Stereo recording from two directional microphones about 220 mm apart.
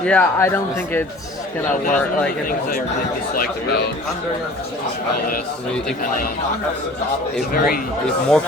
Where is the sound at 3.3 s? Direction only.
45° left (ahead or behind).